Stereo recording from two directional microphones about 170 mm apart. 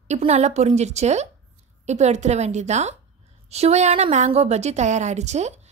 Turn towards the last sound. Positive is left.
turn(degrees=-40)  # may be behind; listen again after turning